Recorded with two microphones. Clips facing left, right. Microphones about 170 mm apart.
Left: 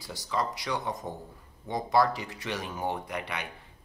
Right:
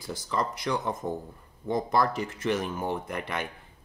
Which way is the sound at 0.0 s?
50° right (ahead or behind).